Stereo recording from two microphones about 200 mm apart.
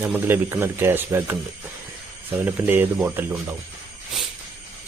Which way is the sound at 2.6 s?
10° right (ahead or behind).